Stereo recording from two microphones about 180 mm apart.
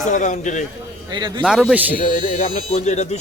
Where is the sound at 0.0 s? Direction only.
45° left (ahead or behind).